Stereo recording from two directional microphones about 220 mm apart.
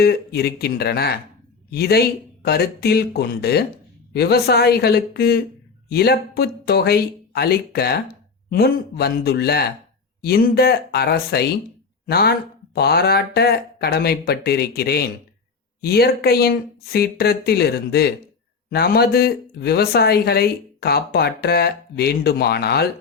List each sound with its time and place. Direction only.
0.0 s speech: 45° left (ahead or behind)